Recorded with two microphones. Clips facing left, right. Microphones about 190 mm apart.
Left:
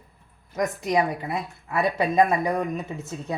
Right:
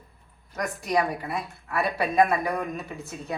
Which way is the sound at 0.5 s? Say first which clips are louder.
Left 3 dB; 20° left (ahead or behind).